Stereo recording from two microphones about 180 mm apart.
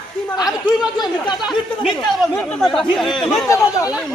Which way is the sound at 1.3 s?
Centre (ahead or behind).